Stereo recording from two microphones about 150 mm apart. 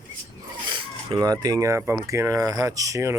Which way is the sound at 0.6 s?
35° right (ahead or behind).